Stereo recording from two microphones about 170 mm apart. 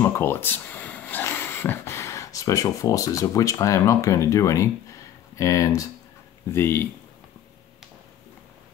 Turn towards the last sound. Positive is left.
turn(degrees=15)  # may be behind; listen again after turning